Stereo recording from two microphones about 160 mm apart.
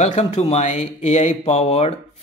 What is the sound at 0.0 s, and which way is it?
Speech, 45° left (ahead or behind).